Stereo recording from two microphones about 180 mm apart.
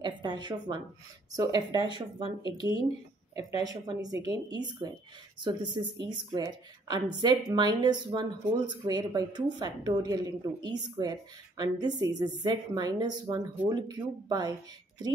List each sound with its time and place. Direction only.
0.0 s a woman's voice: 25° right (ahead or behind)
3.3 s a woman's voice: 20° right (ahead or behind)